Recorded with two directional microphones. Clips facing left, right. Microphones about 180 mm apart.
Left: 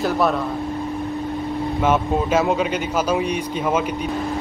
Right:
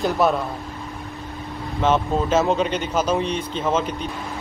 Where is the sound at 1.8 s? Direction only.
10° left (ahead or behind).